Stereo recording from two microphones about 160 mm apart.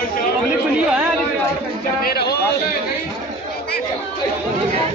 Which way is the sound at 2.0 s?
90° left.